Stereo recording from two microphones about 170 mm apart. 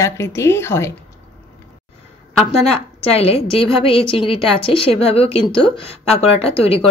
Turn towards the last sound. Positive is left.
turn(degrees=35)  # may be behind; listen again after turning